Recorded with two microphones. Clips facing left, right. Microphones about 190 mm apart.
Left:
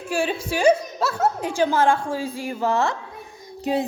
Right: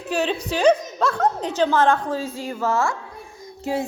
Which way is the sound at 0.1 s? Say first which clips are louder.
Right 1 dB; 10° left (ahead or behind).